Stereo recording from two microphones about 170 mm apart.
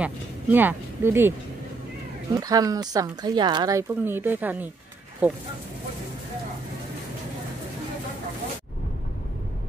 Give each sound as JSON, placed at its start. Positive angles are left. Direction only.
{"t": 0.0, "sound": "speech", "side_deg": -10}
{"t": 2.3, "sound": "speech", "side_deg": -20}